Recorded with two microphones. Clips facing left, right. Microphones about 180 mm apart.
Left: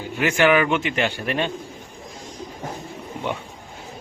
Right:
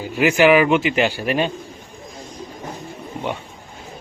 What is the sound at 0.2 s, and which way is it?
Speech, 10° right (ahead or behind).